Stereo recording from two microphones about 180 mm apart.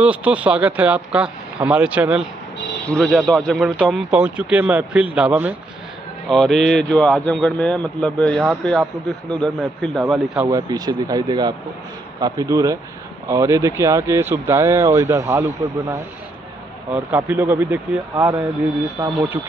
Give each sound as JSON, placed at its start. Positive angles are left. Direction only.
{"t": 0.0, "sound": "speech", "side_deg": -5}
{"t": 10.4, "sound": "speech", "side_deg": -20}